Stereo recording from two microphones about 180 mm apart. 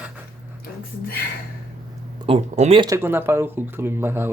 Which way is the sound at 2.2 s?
35° right (ahead or behind).